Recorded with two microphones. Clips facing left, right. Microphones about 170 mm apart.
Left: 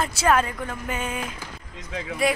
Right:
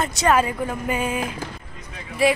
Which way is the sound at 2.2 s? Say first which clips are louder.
Right 4 dB; centre (ahead or behind).